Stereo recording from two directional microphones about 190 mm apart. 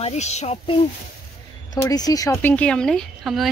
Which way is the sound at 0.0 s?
35° left (ahead or behind).